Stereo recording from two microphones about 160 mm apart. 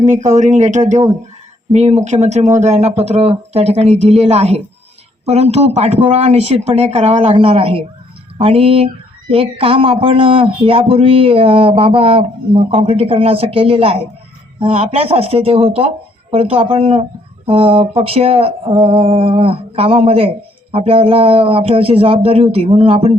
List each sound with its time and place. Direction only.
0.2 s speech: 45° right (ahead or behind)